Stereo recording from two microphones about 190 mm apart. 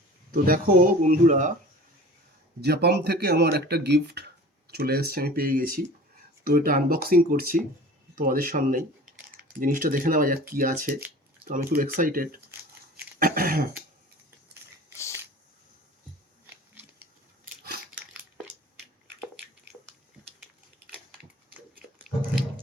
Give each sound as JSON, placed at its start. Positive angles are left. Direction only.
{"t": 0.3, "sound": "speech", "side_deg": -50}
{"t": 2.6, "sound": "speech", "side_deg": -60}
{"t": 13.1, "sound": "throat clearing", "side_deg": -50}
{"t": 21.9, "sound": "a sound", "side_deg": -10}